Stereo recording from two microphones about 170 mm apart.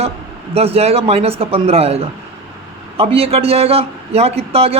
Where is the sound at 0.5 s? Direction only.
35° right (ahead or behind).